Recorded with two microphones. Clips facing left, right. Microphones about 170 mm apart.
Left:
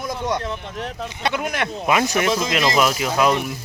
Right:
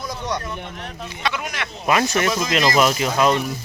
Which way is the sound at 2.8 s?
5° left (ahead or behind).